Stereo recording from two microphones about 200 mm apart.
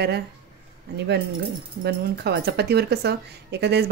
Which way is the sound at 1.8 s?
55° right (ahead or behind).